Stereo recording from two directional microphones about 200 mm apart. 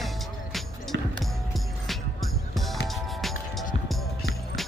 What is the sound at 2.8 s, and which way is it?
Music, centre (ahead or behind).